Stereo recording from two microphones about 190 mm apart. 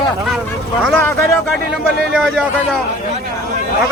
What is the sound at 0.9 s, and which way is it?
Speech, 10° left (ahead or behind).